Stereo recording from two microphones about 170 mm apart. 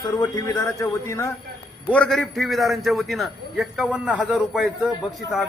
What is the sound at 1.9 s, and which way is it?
A man's voice, centre (ahead or behind).